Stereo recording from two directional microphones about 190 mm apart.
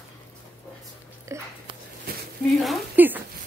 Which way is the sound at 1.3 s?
15° right (ahead or behind).